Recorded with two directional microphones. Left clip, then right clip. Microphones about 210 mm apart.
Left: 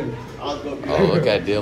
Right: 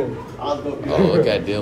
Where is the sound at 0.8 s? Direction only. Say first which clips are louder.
Right 1 dB; 5° right (ahead or behind).